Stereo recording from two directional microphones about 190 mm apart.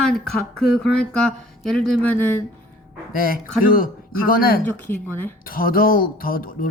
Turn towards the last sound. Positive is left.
turn(degrees=50)  # may be behind; listen again after turning